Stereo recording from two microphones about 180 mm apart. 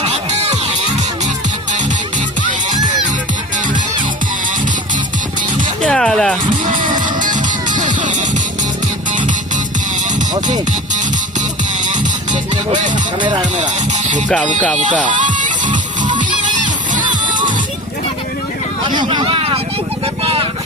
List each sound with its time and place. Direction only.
0.0 s music: 35° right (ahead or behind)
5.8 s music: 5° left (ahead or behind)
6.9 s music: 45° right (ahead or behind)
11.9 s music: 45° right (ahead or behind)
13.2 s speech: 25° right (ahead or behind)
15.0 s music: 45° right (ahead or behind)
18.9 s speech: 25° right (ahead or behind)